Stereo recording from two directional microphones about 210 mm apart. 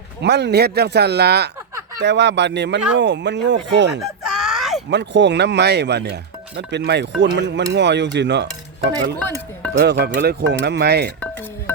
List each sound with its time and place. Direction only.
0.2 s speech: 55° right (ahead or behind)
4.0 s a sound: 5° right (ahead or behind)
4.9 s speech: 55° right (ahead or behind)